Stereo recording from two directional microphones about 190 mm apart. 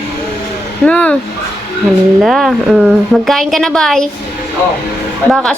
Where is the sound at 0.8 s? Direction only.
5° left (ahead or behind).